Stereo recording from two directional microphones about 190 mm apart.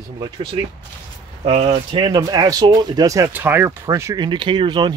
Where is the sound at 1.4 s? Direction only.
30° right (ahead or behind).